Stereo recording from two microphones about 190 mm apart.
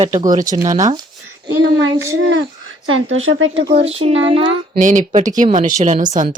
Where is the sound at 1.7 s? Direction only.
90° right.